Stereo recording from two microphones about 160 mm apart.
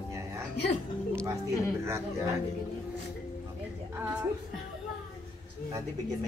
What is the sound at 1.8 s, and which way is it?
Speech, 15° right (ahead or behind).